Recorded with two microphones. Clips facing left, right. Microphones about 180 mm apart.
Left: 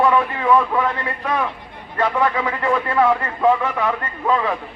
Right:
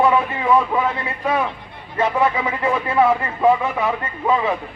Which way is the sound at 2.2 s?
20° right (ahead or behind).